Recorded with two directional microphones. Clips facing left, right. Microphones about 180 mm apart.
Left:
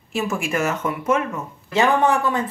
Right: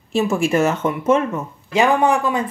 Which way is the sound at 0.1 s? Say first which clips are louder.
Right 6 dB; 30° right (ahead or behind).